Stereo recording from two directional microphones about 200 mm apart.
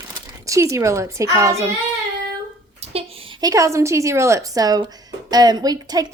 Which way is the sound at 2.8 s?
30° right (ahead or behind).